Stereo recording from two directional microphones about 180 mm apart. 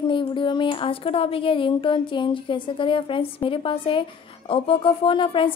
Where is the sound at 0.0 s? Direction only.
25° left (ahead or behind).